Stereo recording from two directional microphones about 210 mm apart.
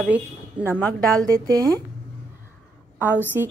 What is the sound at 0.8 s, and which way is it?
Speech, 5° left (ahead or behind).